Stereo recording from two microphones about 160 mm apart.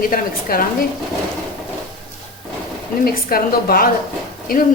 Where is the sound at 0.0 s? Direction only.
60° left (ahead or behind).